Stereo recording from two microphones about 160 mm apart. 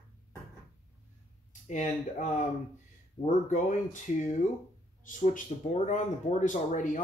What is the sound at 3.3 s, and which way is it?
Speech, 50° left (ahead or behind).